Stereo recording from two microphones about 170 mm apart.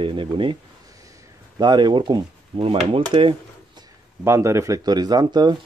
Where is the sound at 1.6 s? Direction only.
25° right (ahead or behind).